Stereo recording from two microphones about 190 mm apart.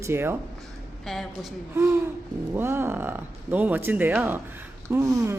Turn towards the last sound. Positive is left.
turn(degrees=-15)  # may be behind; listen again after turning